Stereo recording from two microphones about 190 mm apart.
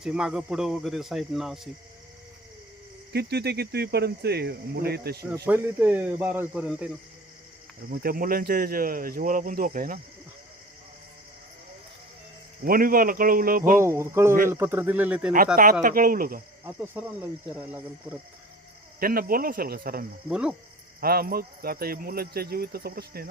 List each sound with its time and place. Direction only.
0.0 s speech: 5° right (ahead or behind)
3.1 s speech: 60° right (ahead or behind)
5.5 s speech: 10° right (ahead or behind)
7.9 s speech: 50° right (ahead or behind)
12.6 s speech: 50° right (ahead or behind)
13.8 s speech: 15° right (ahead or behind)
15.8 s speech: 45° right (ahead or behind)
16.9 s speech: 10° right (ahead or behind)
18.9 s speech: 50° right (ahead or behind)
20.3 s speech: 5° right (ahead or behind)
21.0 s speech: 50° right (ahead or behind)